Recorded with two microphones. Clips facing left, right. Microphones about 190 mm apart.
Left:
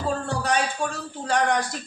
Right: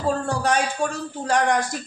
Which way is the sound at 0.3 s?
45° right (ahead or behind).